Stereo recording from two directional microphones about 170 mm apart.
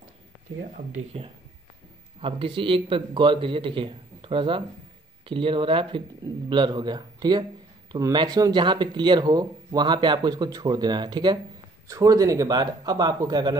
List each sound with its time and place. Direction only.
2.1 s speech: 30° right (ahead or behind)